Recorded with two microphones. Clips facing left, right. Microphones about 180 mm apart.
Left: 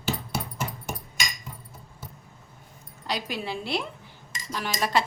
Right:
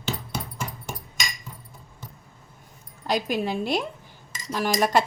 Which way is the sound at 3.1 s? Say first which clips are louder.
Right 6 dB; 45° right (ahead or behind).